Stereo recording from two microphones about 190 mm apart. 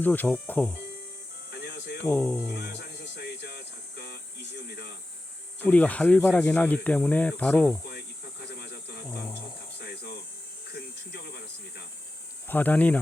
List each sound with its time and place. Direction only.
0.0 s speech: 10° left (ahead or behind)
1.5 s music: 60° left (ahead or behind)
2.0 s speech: 10° left (ahead or behind)
3.9 s a sound: 55° left (ahead or behind)
5.5 s speech: 10° left (ahead or behind)
7.9 s cricket: 55° left (ahead or behind)
9.7 s insect: 60° left (ahead or behind)
10.7 s a sound: 60° left (ahead or behind)
12.5 s speech: 10° left (ahead or behind)